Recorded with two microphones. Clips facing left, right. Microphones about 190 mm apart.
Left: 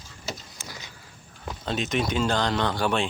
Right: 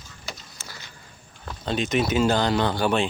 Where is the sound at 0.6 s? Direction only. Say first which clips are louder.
Left 2 dB; 15° left (ahead or behind).